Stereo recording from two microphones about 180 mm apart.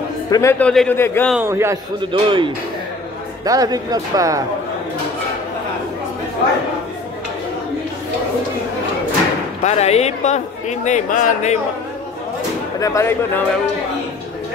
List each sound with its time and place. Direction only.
0.3 s speech: 15° left (ahead or behind)
1.3 s a man's voice: 15° right (ahead or behind)
2.0 s speech: 25° right (ahead or behind)
9.6 s speech: 40° left (ahead or behind)
12.8 s speech: 15° left (ahead or behind)